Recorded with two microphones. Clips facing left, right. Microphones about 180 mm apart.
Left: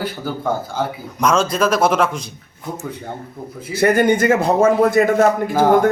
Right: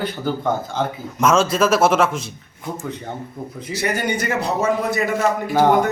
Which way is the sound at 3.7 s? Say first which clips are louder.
Left 8 dB; 55° left (ahead or behind).